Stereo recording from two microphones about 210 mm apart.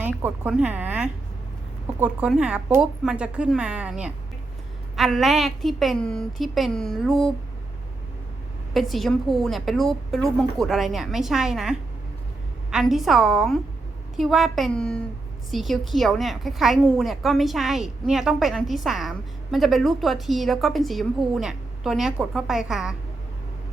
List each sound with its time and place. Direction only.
0.0 s a woman's voice: 5° right (ahead or behind)
8.7 s a woman's voice: centre (ahead or behind)